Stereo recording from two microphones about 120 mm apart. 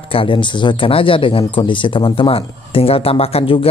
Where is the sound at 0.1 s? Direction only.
45° left (ahead or behind).